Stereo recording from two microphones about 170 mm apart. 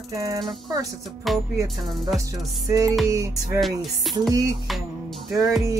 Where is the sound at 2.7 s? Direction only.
20° right (ahead or behind).